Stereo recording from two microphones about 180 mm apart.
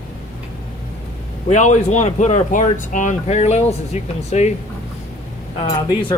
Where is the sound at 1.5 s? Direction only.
40° left (ahead or behind).